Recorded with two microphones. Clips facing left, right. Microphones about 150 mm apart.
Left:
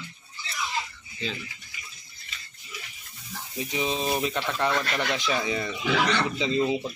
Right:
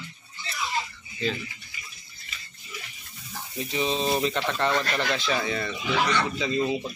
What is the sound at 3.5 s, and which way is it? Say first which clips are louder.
Speech: right 1 dB; 15° left (ahead or behind).